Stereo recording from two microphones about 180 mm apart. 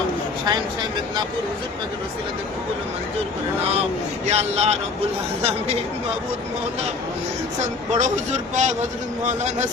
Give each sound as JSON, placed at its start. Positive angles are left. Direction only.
{"t": 0.4, "sound": "speech", "side_deg": -25}
{"t": 4.3, "sound": "speech", "side_deg": -35}
{"t": 7.9, "sound": "speech", "side_deg": -40}